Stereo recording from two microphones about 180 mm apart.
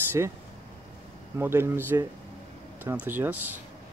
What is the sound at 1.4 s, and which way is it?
Speech, 15° right (ahead or behind).